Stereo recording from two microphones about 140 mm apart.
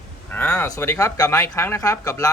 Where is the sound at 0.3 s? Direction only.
10° left (ahead or behind).